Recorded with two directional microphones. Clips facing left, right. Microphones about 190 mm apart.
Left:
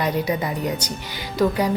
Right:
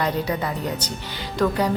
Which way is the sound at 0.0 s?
15° left (ahead or behind).